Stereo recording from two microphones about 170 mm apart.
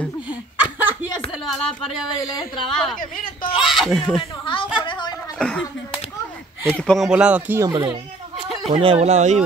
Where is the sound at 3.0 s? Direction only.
55° left (ahead or behind).